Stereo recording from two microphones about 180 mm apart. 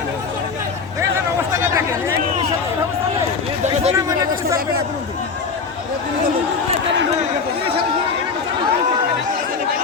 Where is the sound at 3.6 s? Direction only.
35° right (ahead or behind).